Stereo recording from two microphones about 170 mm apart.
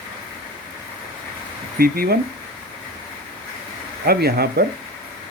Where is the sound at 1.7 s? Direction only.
60° right (ahead or behind).